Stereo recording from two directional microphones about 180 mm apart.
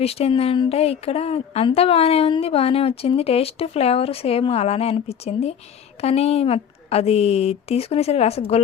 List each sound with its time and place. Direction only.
0.0 s speech: 35° left (ahead or behind)